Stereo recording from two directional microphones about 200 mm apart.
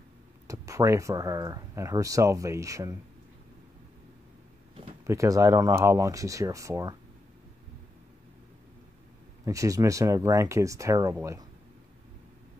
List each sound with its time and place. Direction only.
0.5 s speech: 15° right (ahead or behind)
5.0 s speech: 15° right (ahead or behind)
9.4 s speech: 15° right (ahead or behind)